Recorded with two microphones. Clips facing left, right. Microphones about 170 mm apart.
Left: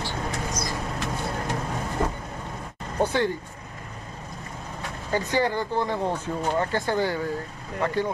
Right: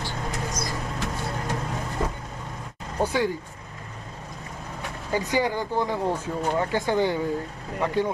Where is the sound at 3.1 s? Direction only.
10° right (ahead or behind).